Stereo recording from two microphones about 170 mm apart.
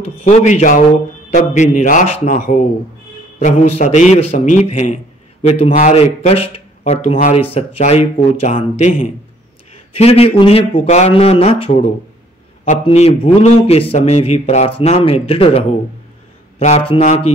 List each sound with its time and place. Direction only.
0.2 s a man's voice: 45° left (ahead or behind)
7.5 s a man's voice: 35° left (ahead or behind)
12.8 s a man's voice: 35° left (ahead or behind)